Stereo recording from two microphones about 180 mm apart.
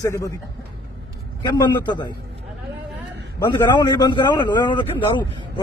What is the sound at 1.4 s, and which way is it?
Speech, 25° left (ahead or behind).